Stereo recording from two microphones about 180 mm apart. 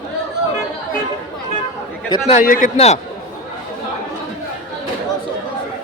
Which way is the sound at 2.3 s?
50° left (ahead or behind).